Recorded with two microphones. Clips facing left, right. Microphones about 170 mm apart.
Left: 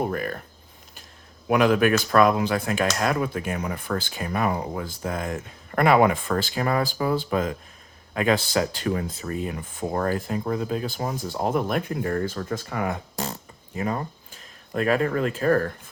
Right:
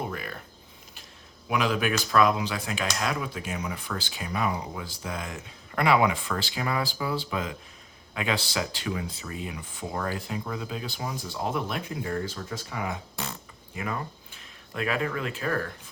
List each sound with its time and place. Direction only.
0.1 s speech: 45° left (ahead or behind)
1.5 s speech: 50° left (ahead or behind)
13.7 s speech: 35° left (ahead or behind)